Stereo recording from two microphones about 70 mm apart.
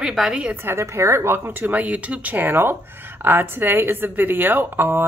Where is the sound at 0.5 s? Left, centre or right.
Right.